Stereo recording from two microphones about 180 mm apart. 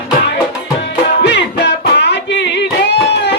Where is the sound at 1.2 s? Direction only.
70° left (ahead or behind).